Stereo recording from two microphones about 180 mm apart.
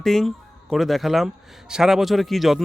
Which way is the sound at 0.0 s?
Centre (ahead or behind).